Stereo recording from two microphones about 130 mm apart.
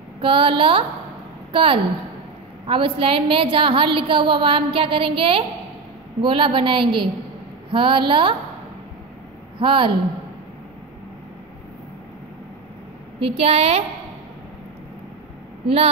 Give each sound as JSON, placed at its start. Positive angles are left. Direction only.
{"t": 0.2, "sound": "a woman's voice", "side_deg": -40}
{"t": 9.6, "sound": "a woman's voice", "side_deg": -40}
{"t": 13.3, "sound": "a woman's voice", "side_deg": -50}
{"t": 15.6, "sound": "a woman's voice", "side_deg": -50}